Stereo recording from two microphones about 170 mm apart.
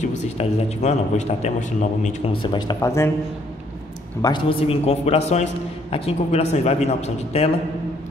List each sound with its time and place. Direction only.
0.0 s a man's voice: 40° left (ahead or behind)
2.4 s speech: 25° left (ahead or behind)
4.2 s a man's voice: 30° left (ahead or behind)